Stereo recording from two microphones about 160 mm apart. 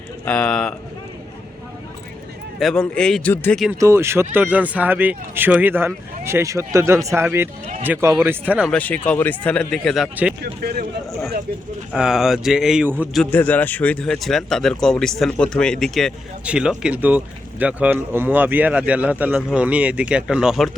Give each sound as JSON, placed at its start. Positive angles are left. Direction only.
{"t": 0.3, "sound": "speech", "side_deg": 5}
{"t": 2.6, "sound": "speech", "side_deg": 5}
{"t": 3.8, "sound": "speech", "side_deg": -15}
{"t": 8.7, "sound": "speech", "side_deg": 10}
{"t": 10.4, "sound": "speech", "side_deg": -80}
{"t": 11.9, "sound": "speech", "side_deg": -5}
{"t": 13.3, "sound": "speech", "side_deg": 10}